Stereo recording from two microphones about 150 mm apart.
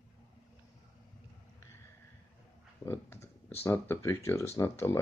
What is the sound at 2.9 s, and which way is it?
Speech, 15° left (ahead or behind).